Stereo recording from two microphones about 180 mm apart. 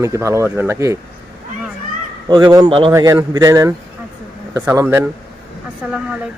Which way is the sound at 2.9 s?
15° right (ahead or behind).